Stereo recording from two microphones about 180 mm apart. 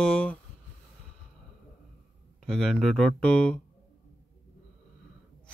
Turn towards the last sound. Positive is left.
turn(degrees=5)  # may be behind; listen again after turning